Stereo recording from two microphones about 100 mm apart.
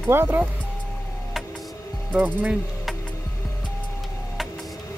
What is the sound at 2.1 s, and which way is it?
Speech, 10° right (ahead or behind).